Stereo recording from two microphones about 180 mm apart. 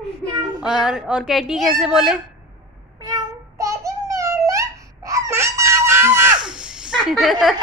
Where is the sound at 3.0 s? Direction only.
20° right (ahead or behind); by 7.3 s centre (ahead or behind).